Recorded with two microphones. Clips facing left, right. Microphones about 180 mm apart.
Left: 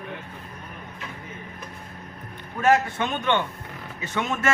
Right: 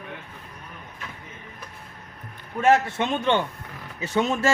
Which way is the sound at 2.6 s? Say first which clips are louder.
Right 1 dB; 25° right (ahead or behind).